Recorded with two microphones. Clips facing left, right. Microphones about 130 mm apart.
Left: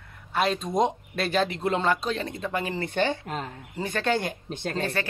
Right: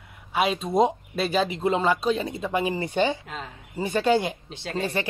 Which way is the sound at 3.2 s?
45° left (ahead or behind).